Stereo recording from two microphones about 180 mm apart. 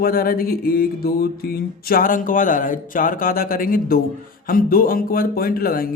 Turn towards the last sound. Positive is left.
turn(degrees=55)  # may be behind; listen again after turning